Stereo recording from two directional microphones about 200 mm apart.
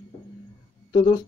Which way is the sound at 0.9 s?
20° left (ahead or behind).